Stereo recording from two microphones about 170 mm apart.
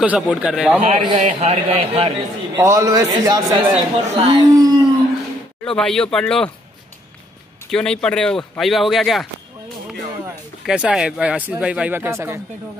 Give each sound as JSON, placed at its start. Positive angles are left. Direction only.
{"t": 0.0, "sound": "speech", "side_deg": -5}
{"t": 1.0, "sound": "a man's voice", "side_deg": -35}
{"t": 2.5, "sound": "a man's voice", "side_deg": -20}
{"t": 3.7, "sound": "a man's voice", "side_deg": -40}
{"t": 4.3, "sound": "a man's voice", "side_deg": -25}
{"t": 5.6, "sound": "speech", "side_deg": 5}
{"t": 7.7, "sound": "speech", "side_deg": 5}
{"t": 10.6, "sound": "speech", "side_deg": -5}